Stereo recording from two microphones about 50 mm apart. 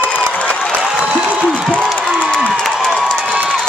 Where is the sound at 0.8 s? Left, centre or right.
Centre.